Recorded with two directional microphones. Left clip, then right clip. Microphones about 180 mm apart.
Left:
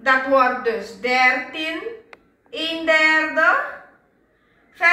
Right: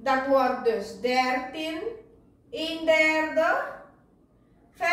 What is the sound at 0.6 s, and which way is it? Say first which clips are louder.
A woman's voice: left 3 dB; 35° right (ahead or behind).